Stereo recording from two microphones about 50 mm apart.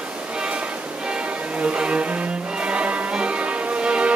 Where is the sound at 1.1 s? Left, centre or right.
Right.